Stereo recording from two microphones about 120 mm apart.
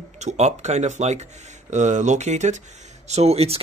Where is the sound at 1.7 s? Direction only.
90° right.